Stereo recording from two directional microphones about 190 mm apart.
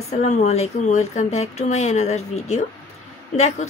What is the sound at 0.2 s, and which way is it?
Speech, 35° left (ahead or behind).